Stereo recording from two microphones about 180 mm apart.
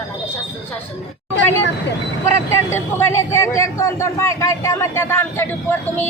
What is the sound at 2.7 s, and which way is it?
Speech, 15° left (ahead or behind).